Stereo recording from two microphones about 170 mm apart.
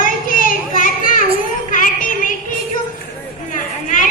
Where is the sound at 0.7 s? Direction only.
50° left (ahead or behind).